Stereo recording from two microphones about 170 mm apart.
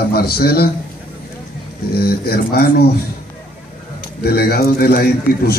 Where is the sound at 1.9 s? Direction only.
65° left (ahead or behind).